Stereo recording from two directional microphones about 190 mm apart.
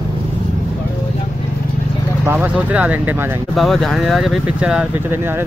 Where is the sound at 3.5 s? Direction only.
Centre (ahead or behind).